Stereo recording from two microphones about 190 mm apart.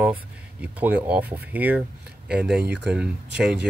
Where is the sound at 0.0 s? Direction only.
10° right (ahead or behind).